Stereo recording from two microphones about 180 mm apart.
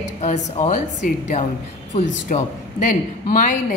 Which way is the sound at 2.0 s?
40° left (ahead or behind).